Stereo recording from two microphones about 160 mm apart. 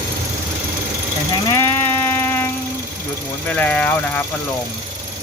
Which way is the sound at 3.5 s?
10° left (ahead or behind).